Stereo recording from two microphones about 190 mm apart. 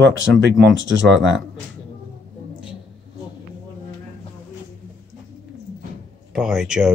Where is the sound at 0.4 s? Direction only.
70° right (ahead or behind).